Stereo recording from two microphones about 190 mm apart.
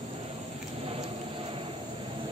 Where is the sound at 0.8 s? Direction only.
30° right (ahead or behind).